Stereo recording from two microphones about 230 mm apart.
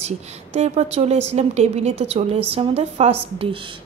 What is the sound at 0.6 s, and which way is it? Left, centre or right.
A woman's voice, right.